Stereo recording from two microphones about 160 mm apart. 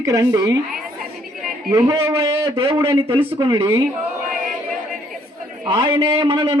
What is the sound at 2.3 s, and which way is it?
A man's voice, 35° right (ahead or behind).